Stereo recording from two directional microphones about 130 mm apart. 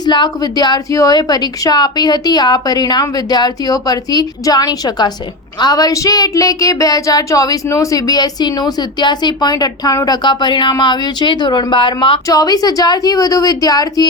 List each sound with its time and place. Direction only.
0.0 s speech: 35° left (ahead or behind)
12.3 s a woman's voice: 30° left (ahead or behind)